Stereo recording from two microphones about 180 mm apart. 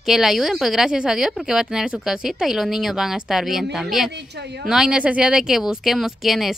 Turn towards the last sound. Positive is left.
turn(degrees=0)  # may be behind; listen again after turning